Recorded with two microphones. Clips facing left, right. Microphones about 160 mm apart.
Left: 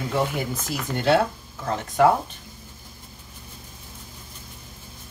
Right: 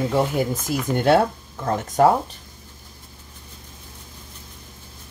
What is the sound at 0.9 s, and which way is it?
Speech, 55° right (ahead or behind).